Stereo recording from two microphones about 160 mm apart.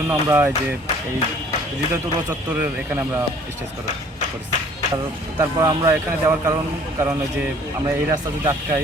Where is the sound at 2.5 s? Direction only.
10° right (ahead or behind).